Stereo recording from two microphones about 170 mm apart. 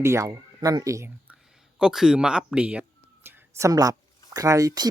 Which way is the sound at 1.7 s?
5° right (ahead or behind).